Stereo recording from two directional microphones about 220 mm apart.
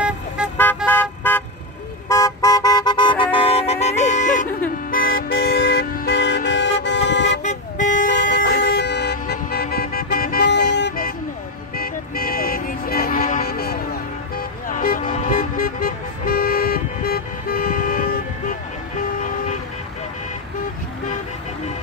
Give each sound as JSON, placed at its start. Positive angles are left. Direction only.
{"t": 0.8, "sound": "car", "side_deg": 10}
{"t": 3.3, "sound": "music", "side_deg": 25}
{"t": 4.9, "sound": "vehicle", "side_deg": 40}
{"t": 7.4, "sound": "vehicle", "side_deg": 35}
{"t": 8.1, "sound": "vehicle", "side_deg": 55}